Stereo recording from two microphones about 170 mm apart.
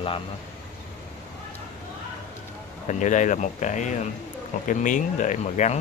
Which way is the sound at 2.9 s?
45° left (ahead or behind).